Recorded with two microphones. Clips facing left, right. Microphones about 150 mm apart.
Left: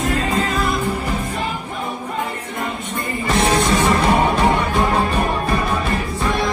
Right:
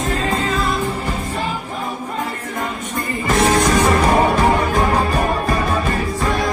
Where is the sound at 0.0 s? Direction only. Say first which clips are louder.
Even; 35° right (ahead or behind).